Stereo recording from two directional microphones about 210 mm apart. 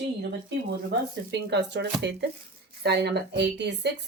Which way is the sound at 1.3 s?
55° right (ahead or behind).